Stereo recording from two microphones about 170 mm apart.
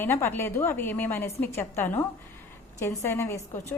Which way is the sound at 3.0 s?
15° left (ahead or behind).